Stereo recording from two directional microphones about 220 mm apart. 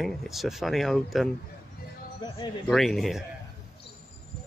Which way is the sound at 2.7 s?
Centre (ahead or behind).